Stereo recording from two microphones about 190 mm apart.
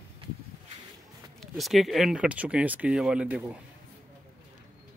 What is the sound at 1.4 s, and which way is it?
Speech, centre (ahead or behind).